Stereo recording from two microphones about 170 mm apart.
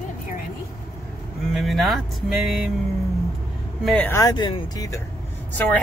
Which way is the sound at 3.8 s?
10° left (ahead or behind).